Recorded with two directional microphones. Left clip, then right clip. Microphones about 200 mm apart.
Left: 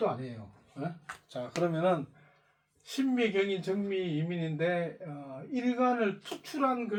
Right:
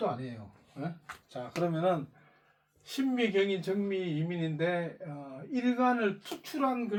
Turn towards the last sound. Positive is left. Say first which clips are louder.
# left 1 dB
turn(degrees=5)  # may be behind; listen again after turning